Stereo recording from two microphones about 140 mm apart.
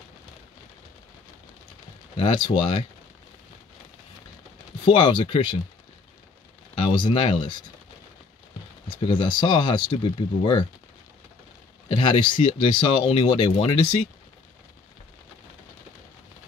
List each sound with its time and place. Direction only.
2.1 s speech: 35° left (ahead or behind)
4.8 s speech: 35° left (ahead or behind)
6.9 s speech: 35° left (ahead or behind)
8.8 s speech: 35° left (ahead or behind)
11.9 s speech: 35° left (ahead or behind)